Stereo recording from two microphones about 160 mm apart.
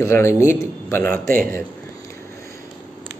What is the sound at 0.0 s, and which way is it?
A man's voice, 15° left (ahead or behind).